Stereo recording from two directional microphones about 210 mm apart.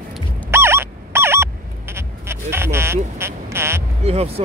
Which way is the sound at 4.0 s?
30° right (ahead or behind).